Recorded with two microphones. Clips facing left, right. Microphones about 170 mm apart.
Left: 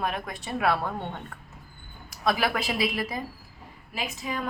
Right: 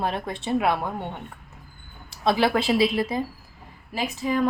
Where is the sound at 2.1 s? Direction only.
25° right (ahead or behind).